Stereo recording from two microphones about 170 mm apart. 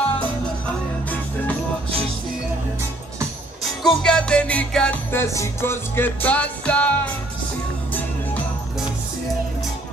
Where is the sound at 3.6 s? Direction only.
Centre (ahead or behind).